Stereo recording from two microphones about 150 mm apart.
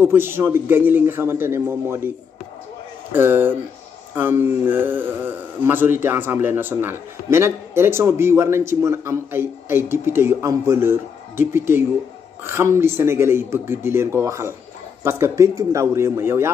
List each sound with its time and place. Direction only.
0.0 s speech: 15° right (ahead or behind)